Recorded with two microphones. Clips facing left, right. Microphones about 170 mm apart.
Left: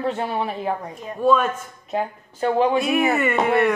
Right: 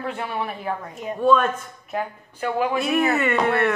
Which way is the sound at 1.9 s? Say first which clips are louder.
Left 3 dB; 30° left (ahead or behind).